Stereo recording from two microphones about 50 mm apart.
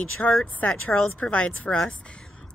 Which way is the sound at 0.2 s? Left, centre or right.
Left.